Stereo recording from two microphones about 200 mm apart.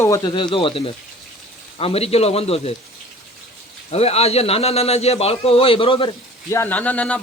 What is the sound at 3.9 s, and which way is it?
Speech, 30° left (ahead or behind).